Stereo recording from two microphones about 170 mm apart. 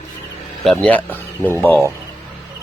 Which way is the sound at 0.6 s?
5° left (ahead or behind).